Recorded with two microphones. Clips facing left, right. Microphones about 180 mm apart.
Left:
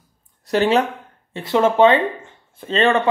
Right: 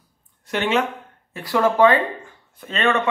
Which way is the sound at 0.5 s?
35° left (ahead or behind).